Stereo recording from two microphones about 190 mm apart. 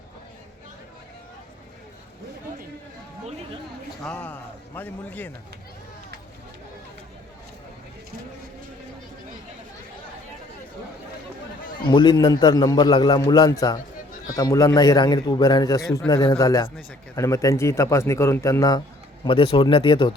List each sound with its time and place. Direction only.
4.0 s speech: 5° left (ahead or behind)
11.9 s a man's voice: 25° left (ahead or behind)
19.2 s a man's voice: 30° left (ahead or behind)